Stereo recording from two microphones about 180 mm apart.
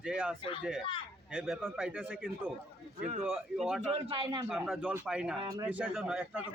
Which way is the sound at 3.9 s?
30° right (ahead or behind).